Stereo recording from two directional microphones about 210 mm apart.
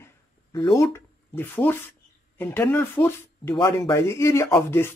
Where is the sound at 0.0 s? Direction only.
20° left (ahead or behind).